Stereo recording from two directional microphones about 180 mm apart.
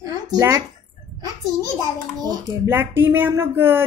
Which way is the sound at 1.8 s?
20° right (ahead or behind).